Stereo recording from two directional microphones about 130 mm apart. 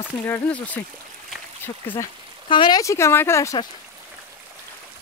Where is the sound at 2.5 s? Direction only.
40° left (ahead or behind).